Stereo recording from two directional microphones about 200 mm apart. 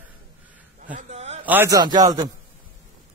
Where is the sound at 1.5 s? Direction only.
15° right (ahead or behind).